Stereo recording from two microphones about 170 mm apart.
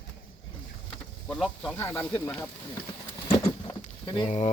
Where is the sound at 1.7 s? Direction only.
15° left (ahead or behind).